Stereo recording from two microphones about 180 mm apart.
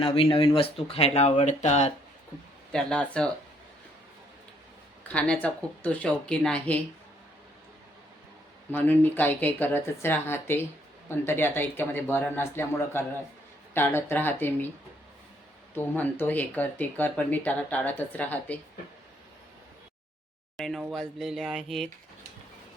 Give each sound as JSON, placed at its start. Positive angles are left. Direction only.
{"t": 0.0, "sound": "speech", "side_deg": 30}
{"t": 2.7, "sound": "speech", "side_deg": 5}
{"t": 5.0, "sound": "speech", "side_deg": 5}
{"t": 8.7, "sound": "speech", "side_deg": 10}
{"t": 15.7, "sound": "speech", "side_deg": 10}
{"t": 20.6, "sound": "speech", "side_deg": 0}